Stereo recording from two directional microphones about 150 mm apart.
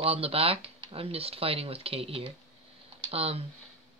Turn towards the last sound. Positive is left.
turn(degrees=-40)  # may be behind; listen again after turning